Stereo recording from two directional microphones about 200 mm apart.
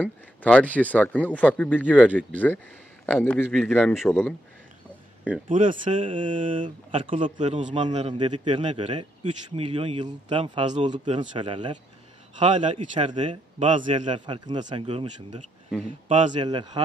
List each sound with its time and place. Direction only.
0.0 s a man's voice: 5° left (ahead or behind)
1.9 s speech: 5° right (ahead or behind)
2.1 s a man's voice: 10° left (ahead or behind)
5.5 s a man's voice: 40° right (ahead or behind)
6.9 s a man's voice: 30° right (ahead or behind)
12.4 s a man's voice: 35° right (ahead or behind)
12.7 s speech: 25° right (ahead or behind)
13.7 s a man's voice: 40° right (ahead or behind)
14.1 s speech: 25° right (ahead or behind)